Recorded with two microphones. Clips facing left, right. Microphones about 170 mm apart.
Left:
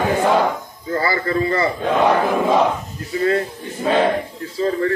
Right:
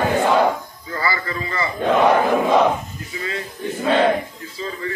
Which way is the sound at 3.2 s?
55° left (ahead or behind).